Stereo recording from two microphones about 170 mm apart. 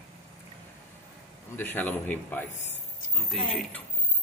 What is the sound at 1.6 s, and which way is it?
A man's voice, 10° left (ahead or behind).